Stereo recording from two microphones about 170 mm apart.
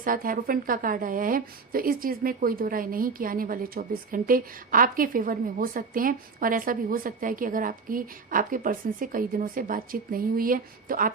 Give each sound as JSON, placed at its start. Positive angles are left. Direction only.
{"t": 0.0, "sound": "speech", "side_deg": -55}